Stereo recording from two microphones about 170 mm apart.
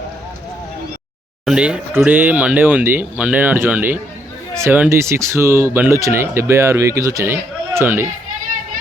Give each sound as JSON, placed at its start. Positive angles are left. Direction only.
{"t": 1.5, "sound": "speech", "side_deg": -5}